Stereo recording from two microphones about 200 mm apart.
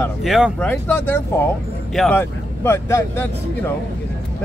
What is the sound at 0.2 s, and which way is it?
Speech, centre (ahead or behind).